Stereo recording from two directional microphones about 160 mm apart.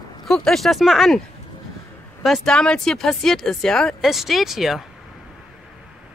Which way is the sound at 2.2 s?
Centre (ahead or behind).